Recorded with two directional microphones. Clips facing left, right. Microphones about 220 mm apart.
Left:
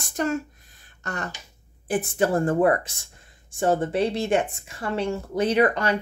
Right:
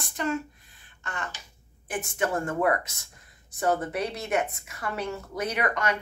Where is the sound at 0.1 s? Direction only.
45° left (ahead or behind).